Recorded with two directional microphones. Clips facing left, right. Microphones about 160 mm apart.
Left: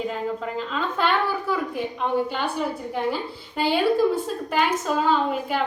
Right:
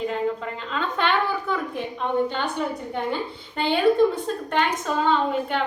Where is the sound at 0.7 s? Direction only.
5° left (ahead or behind).